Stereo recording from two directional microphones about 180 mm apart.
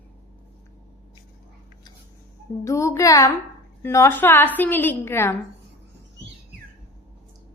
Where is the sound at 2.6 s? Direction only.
15° left (ahead or behind).